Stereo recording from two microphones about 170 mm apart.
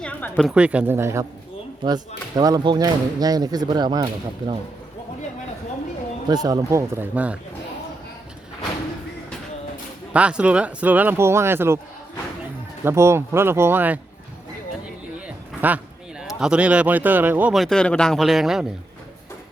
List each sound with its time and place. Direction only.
0.0 s a sound: 5° left (ahead or behind)
0.5 s speech: 5° right (ahead or behind); by 4.5 s 25° right (ahead or behind)
6.2 s speech: 25° right (ahead or behind)
10.1 s speech: 5° right (ahead or behind)
12.8 s speech: 15° right (ahead or behind)
15.6 s a man's voice: 10° right (ahead or behind)